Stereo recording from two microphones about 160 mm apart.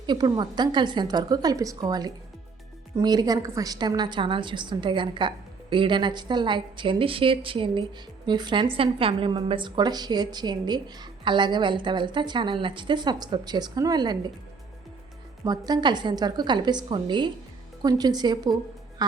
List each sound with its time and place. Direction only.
0.0 s a woman's voice: 25° right (ahead or behind)
15.4 s a woman's voice: 25° right (ahead or behind)